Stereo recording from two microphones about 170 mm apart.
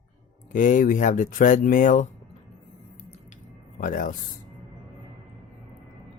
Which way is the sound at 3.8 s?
50° left (ahead or behind).